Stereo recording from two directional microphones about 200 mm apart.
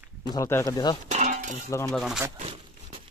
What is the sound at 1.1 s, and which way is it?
Cutlery, 35° right (ahead or behind).